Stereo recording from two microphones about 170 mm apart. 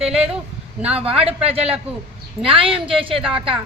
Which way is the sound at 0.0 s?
35° right (ahead or behind).